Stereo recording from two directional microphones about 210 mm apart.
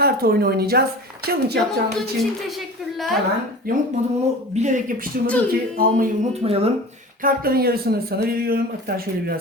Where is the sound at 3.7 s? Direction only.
45° right (ahead or behind).